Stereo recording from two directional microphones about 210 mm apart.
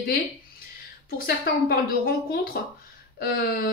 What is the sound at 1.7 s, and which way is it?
Speech, 45° left (ahead or behind).